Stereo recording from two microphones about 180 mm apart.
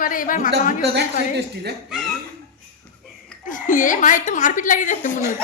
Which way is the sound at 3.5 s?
45° left (ahead or behind).